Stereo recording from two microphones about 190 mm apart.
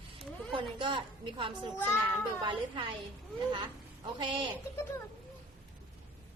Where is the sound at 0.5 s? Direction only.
25° right (ahead or behind).